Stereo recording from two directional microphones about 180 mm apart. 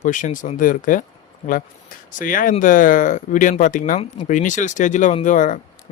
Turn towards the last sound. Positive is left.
turn(degrees=45)  # may be behind; listen again after turning